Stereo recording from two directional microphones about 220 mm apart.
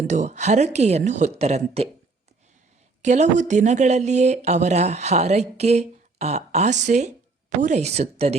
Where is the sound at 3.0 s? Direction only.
30° right (ahead or behind).